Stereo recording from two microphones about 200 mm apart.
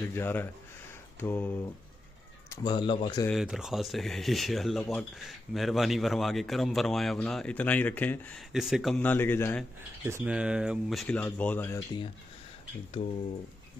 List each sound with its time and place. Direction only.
0.0 s speech: 10° left (ahead or behind)
2.5 s speech: 20° left (ahead or behind)
3.3 s a man's voice: centre (ahead or behind)
10.0 s a man's voice: 10° right (ahead or behind); by 11.8 s 10° left (ahead or behind)